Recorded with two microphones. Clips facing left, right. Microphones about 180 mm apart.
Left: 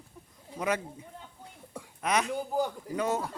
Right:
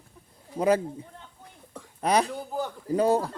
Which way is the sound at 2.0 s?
35° right (ahead or behind).